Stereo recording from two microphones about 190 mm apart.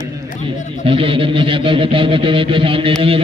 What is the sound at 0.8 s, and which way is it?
Mantra, 30° right (ahead or behind).